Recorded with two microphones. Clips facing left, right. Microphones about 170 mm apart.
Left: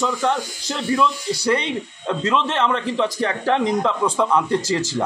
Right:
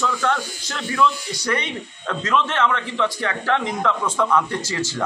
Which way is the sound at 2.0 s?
20° left (ahead or behind).